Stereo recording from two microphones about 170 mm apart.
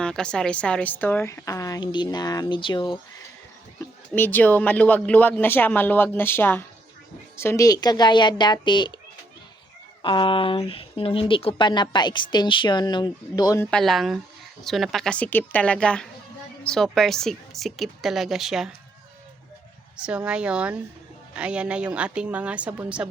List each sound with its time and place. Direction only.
0.0 s a woman's voice: 5° left (ahead or behind); by 3.0 s 25° left (ahead or behind)
4.1 s a woman's voice: 10° left (ahead or behind); by 9.0 s 25° left (ahead or behind)
10.0 s a woman's voice: 30° left (ahead or behind)
13.7 s speech: 5° left (ahead or behind)
20.0 s a woman's voice: 5° right (ahead or behind)